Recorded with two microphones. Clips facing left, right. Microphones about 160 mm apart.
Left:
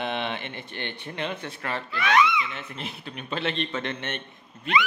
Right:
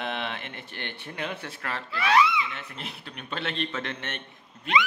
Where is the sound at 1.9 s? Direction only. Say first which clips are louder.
Even; 30° right (ahead or behind).